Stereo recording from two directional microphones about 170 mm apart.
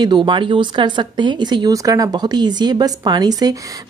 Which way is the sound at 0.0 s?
30° right (ahead or behind).